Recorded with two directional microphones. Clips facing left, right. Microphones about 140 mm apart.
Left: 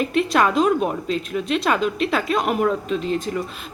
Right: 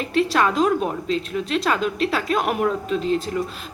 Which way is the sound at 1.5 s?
5° left (ahead or behind).